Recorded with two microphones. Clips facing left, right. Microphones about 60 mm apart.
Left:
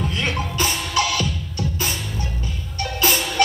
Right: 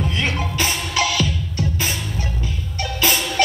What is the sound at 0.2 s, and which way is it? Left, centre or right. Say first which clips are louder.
Music: even; right.